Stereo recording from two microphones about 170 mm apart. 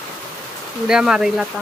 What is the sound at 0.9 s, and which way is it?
Speech, 5° right (ahead or behind).